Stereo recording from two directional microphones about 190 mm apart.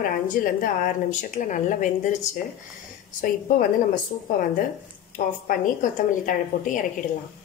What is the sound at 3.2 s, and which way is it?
Speech, 45° left (ahead or behind).